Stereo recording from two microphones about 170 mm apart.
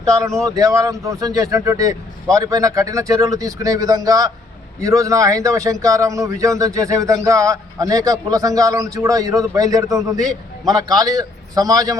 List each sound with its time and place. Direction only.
0.0 s a man's voice: 20° right (ahead or behind)